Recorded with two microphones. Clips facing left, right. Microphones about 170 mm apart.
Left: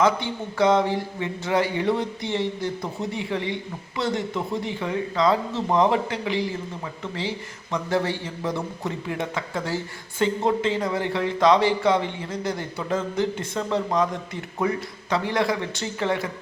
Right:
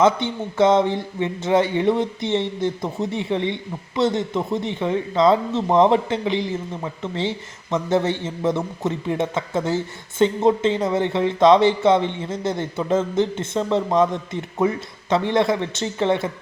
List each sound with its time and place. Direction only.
0.0 s a man's voice: 20° right (ahead or behind)